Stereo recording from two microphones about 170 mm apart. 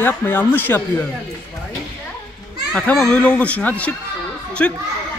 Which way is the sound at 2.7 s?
5° left (ahead or behind).